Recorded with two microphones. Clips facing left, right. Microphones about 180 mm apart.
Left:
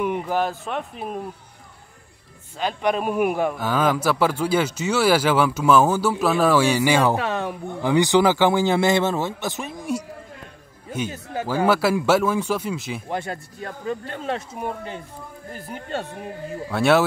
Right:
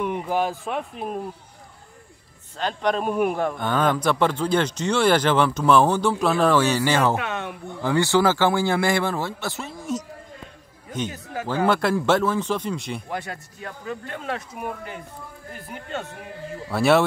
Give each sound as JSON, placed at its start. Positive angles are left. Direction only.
{"t": 0.0, "sound": "speech", "side_deg": 0}
{"t": 2.5, "sound": "a man's voice", "side_deg": 10}
{"t": 7.2, "sound": "speech", "side_deg": 35}
{"t": 7.8, "sound": "a man's voice", "side_deg": 15}
{"t": 11.4, "sound": "a man's voice", "side_deg": 10}
{"t": 13.1, "sound": "speech", "side_deg": 30}
{"t": 16.7, "sound": "speech", "side_deg": 0}